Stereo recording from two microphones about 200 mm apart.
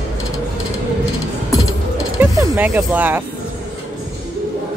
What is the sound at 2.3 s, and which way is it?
Speech, 15° right (ahead or behind).